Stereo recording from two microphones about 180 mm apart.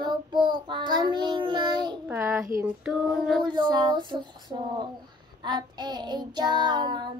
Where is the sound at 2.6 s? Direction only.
5° right (ahead or behind).